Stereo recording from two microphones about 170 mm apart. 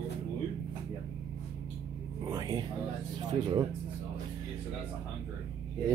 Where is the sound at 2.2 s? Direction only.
25° right (ahead or behind).